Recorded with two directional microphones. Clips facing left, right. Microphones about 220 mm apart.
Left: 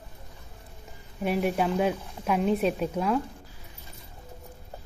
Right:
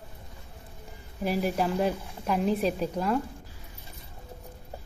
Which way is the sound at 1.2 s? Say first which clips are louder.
Left 1 dB; centre (ahead or behind).